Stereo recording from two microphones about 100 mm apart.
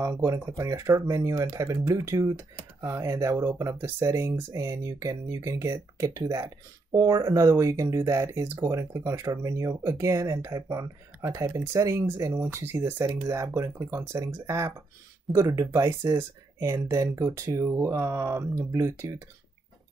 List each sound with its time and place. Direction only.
0.0 s speech: 30° right (ahead or behind)